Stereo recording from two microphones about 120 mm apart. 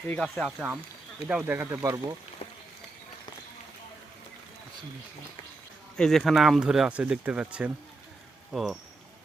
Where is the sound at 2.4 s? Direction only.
60° left (ahead or behind).